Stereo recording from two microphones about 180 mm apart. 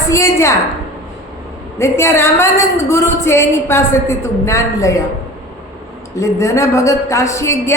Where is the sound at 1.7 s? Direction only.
15° left (ahead or behind).